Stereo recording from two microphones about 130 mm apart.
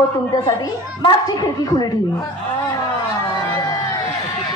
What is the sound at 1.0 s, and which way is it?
Speech, 30° left (ahead or behind).